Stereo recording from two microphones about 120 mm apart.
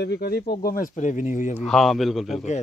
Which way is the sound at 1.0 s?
90° left.